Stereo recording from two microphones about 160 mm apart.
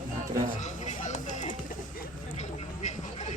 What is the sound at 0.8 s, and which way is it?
Music, 50° left (ahead or behind).